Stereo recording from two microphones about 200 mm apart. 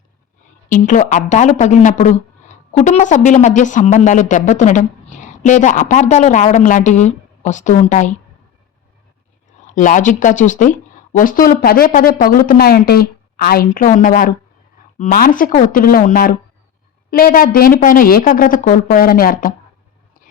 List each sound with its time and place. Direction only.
0.7 s speech: 40° left (ahead or behind)
9.6 s speech: 40° left (ahead or behind)